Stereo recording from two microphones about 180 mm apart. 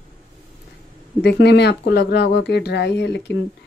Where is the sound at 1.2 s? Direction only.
65° left (ahead or behind).